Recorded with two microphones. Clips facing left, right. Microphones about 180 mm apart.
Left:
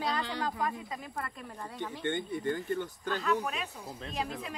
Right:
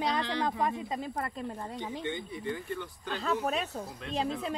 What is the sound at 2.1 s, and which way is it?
Speech, 55° left (ahead or behind).